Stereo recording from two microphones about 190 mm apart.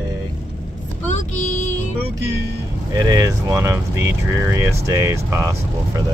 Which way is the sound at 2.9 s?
20° right (ahead or behind).